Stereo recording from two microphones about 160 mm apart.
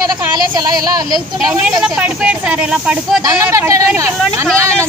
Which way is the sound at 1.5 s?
10° right (ahead or behind).